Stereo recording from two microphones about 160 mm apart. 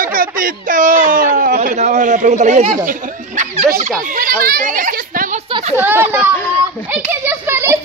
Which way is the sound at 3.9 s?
60° right (ahead or behind).